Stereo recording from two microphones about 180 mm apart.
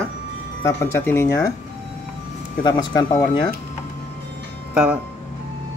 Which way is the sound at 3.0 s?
25° left (ahead or behind).